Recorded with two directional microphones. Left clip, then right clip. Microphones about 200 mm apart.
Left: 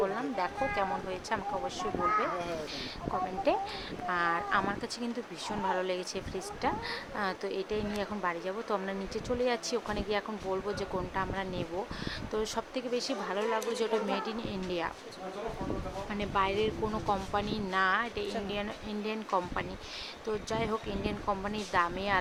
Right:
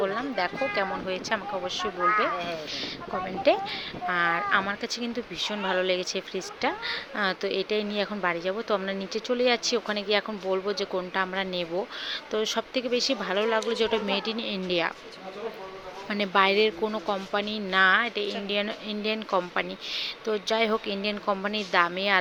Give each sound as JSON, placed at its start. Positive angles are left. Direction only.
{"t": 0.0, "sound": "speech", "side_deg": -15}
{"t": 3.5, "sound": "speech", "side_deg": -15}
{"t": 16.0, "sound": "a woman's voice", "side_deg": -25}
{"t": 17.1, "sound": "speech", "side_deg": -10}